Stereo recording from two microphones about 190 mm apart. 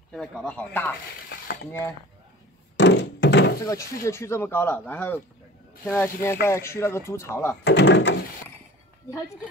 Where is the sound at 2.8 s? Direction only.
65° left (ahead or behind).